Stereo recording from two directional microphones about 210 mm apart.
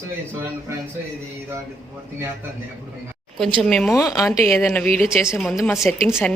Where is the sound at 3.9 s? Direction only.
15° left (ahead or behind).